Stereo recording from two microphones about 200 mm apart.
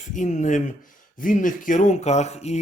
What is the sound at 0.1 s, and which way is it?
Speech, 40° left (ahead or behind).